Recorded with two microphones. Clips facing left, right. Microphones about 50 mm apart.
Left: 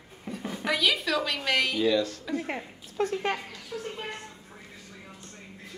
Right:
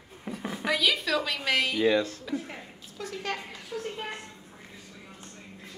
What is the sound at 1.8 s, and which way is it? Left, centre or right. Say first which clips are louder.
Speech: right 2 dB; right.